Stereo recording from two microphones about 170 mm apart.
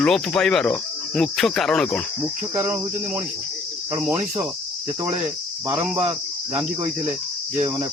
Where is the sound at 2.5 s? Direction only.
15° right (ahead or behind).